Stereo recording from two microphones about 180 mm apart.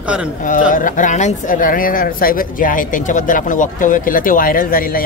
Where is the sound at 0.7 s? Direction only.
45° left (ahead or behind).